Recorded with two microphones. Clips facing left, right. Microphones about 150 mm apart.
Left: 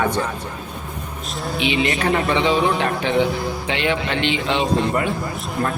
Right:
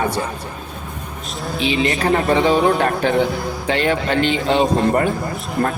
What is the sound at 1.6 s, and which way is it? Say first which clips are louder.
A man's voice: right 2 dB; 35° right (ahead or behind).